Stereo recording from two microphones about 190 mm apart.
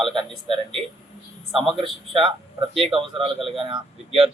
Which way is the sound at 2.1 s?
30° right (ahead or behind).